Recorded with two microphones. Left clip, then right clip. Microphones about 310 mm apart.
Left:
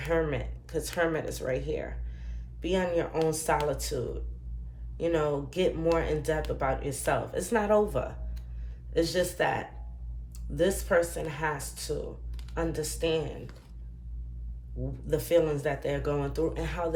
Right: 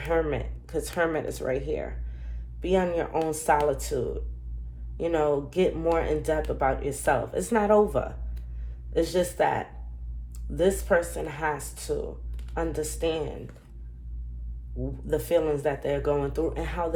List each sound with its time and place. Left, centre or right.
0.0 s speech: centre
15.0 s speech: centre